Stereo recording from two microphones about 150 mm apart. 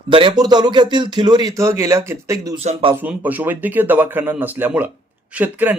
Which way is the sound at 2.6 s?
45° right (ahead or behind).